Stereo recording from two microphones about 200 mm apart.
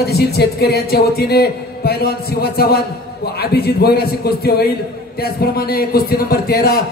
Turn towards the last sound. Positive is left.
turn(degrees=50)  # may be behind; listen again after turning